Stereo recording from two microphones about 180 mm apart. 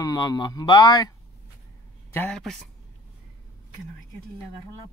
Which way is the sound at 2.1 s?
5° left (ahead or behind).